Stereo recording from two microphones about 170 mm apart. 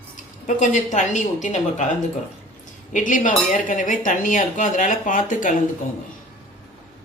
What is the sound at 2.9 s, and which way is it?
Speech, 50° left (ahead or behind).